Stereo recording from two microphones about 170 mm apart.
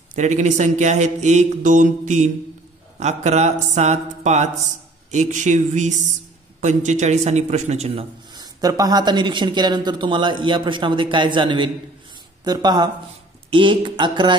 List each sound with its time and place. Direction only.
0.1 s a man's voice: 45° right (ahead or behind)
8.5 s speech: 20° right (ahead or behind)